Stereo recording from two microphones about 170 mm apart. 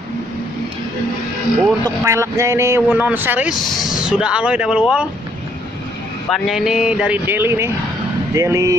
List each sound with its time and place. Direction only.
2.0 s speech: 15° right (ahead or behind)
6.3 s speech: centre (ahead or behind); by 8.7 s 20° right (ahead or behind)